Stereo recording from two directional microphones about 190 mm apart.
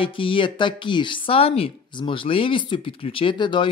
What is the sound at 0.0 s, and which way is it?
Speech, 25° left (ahead or behind).